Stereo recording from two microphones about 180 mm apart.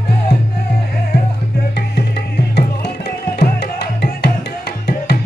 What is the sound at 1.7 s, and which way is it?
Music, 65° left (ahead or behind).